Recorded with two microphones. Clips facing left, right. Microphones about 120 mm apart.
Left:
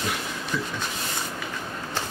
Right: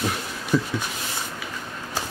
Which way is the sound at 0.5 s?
40° right (ahead or behind).